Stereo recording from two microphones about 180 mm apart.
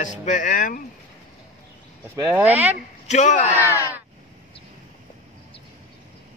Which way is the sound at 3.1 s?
40° left (ahead or behind).